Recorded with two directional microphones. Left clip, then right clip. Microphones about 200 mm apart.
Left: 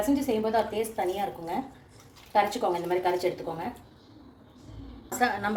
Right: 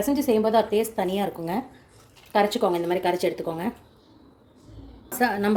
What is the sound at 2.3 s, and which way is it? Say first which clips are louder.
Speech: right 3 dB; 55° right (ahead or behind).